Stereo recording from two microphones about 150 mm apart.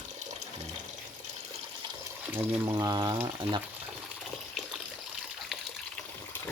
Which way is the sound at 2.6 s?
25° right (ahead or behind).